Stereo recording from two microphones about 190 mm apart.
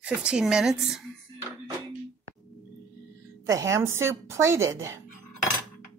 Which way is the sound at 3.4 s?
15° right (ahead or behind).